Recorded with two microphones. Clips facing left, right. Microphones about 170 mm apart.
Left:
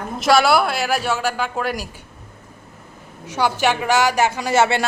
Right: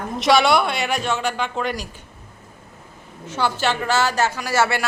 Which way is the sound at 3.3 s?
15° left (ahead or behind).